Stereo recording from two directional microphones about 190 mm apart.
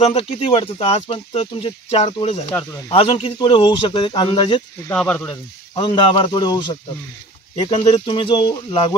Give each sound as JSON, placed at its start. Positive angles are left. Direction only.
{"t": 0.0, "sound": "speech", "side_deg": 30}
{"t": 4.8, "sound": "speech", "side_deg": 5}
{"t": 5.3, "sound": "speech", "side_deg": 25}